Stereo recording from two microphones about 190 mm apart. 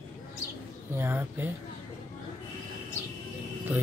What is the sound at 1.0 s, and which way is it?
Speech, 10° right (ahead or behind).